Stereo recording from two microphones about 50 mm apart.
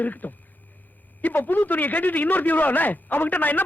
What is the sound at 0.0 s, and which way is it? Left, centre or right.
Speech, left.